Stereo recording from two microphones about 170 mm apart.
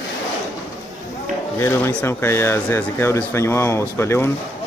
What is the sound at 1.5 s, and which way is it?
Speech, 15° left (ahead or behind).